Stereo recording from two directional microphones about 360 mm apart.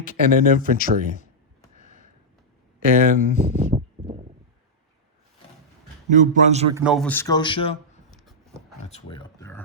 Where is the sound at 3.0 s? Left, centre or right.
Right.